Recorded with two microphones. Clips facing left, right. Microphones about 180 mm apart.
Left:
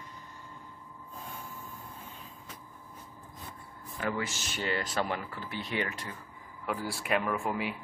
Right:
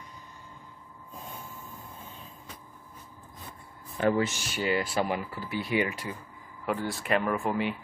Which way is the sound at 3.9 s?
30° right (ahead or behind).